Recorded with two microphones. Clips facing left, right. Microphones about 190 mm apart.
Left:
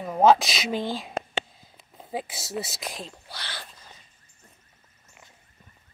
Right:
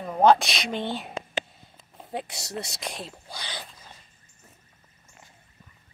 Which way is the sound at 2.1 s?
Centre (ahead or behind).